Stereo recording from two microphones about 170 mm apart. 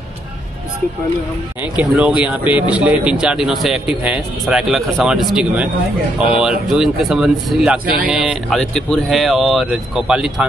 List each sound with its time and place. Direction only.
1.8 s speech: 5° right (ahead or behind)
6.7 s speech: 5° right (ahead or behind)
7.8 s speech: 55° right (ahead or behind)
8.1 s speech: 5° right (ahead or behind)